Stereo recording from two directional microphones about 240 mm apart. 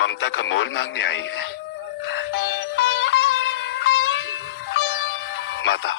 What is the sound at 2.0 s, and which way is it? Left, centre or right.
Music, left.